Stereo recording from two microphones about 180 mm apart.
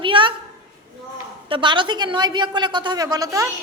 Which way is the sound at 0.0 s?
30° right (ahead or behind).